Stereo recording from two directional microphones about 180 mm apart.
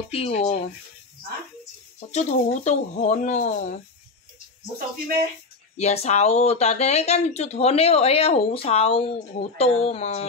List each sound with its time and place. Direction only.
0.1 s speech: 35° left (ahead or behind)
2.0 s speech: 40° left (ahead or behind)
5.8 s speech: 40° left (ahead or behind)